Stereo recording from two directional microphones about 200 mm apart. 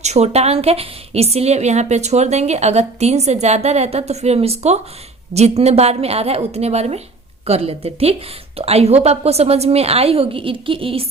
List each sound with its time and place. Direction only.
0.0 s a woman's voice: 35° right (ahead or behind)